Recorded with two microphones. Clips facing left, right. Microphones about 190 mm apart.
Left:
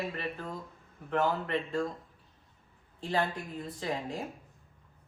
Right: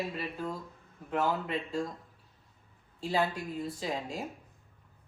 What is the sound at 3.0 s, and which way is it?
Speech, 10° right (ahead or behind).